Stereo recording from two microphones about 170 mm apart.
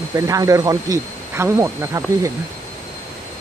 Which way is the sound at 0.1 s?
20° right (ahead or behind).